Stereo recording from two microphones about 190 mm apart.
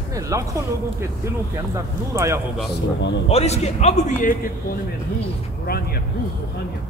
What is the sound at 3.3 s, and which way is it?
A man's voice, 35° left (ahead or behind).